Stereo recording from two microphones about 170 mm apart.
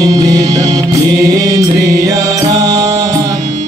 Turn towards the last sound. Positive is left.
turn(degrees=-20)  # may be behind; listen again after turning